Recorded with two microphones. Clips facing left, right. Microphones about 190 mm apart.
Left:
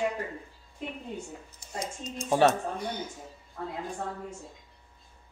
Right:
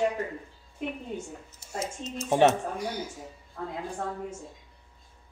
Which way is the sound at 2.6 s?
10° right (ahead or behind).